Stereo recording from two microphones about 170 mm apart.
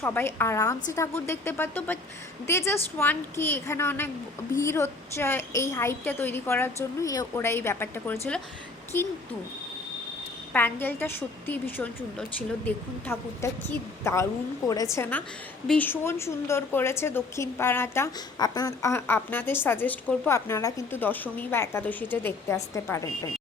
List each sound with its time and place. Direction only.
0.0 s a woman's voice: 10° left (ahead or behind)
10.5 s a woman's voice: 10° left (ahead or behind)